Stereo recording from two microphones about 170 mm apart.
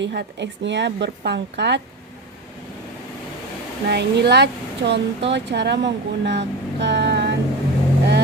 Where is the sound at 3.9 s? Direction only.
75° right (ahead or behind).